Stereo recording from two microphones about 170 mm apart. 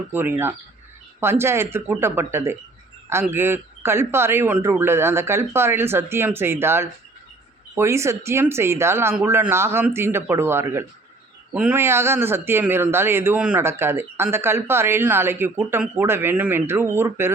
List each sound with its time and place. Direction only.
0.1 s speech: 10° right (ahead or behind)